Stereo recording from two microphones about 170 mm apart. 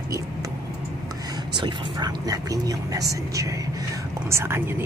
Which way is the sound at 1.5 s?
25° right (ahead or behind).